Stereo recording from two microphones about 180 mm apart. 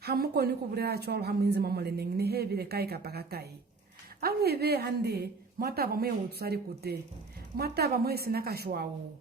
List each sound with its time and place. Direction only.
0.0 s speech: 60° right (ahead or behind)